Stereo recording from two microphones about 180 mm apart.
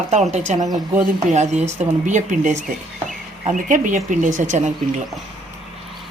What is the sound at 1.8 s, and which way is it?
Speech, 45° right (ahead or behind).